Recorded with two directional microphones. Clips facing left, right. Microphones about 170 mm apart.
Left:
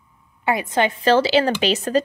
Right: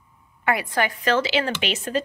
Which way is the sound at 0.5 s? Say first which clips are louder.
Left 4 dB; 20° left (ahead or behind).